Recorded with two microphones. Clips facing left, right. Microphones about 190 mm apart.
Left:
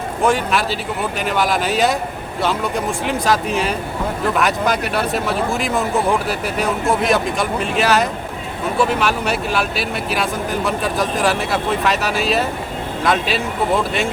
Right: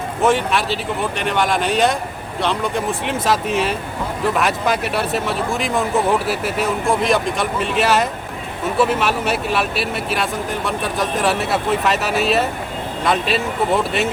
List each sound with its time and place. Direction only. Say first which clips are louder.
0.2 s speech: even; centre (ahead or behind)